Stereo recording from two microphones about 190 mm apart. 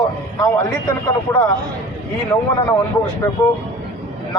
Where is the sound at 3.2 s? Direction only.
15° left (ahead or behind).